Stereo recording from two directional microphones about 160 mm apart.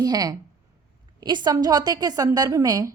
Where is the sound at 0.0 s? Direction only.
25° right (ahead or behind).